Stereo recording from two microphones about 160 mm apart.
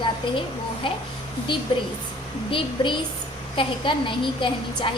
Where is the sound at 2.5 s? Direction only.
30° left (ahead or behind).